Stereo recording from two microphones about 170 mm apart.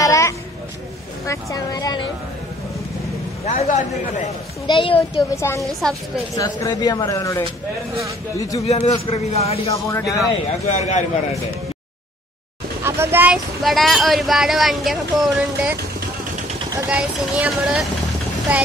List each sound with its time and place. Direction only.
0.0 s a sound: 20° left (ahead or behind)
1.2 s speech: 20° left (ahead or behind)
3.4 s a man's voice: 45° left (ahead or behind)
4.6 s speech: 30° left (ahead or behind)
5.3 s a woman's voice: 15° left (ahead or behind)
5.6 s speech: centre (ahead or behind)
6.3 s speech: 20° left (ahead or behind)
8.6 s speech: 40° left (ahead or behind)
9.8 s speech: 20° left (ahead or behind)
10.7 s a man's voice: 45° left (ahead or behind)
12.8 s speech: 15° right (ahead or behind)
13.6 s speech: centre (ahead or behind)
16.9 s speech: 5° right (ahead or behind)
18.5 s vehicle: 10° right (ahead or behind)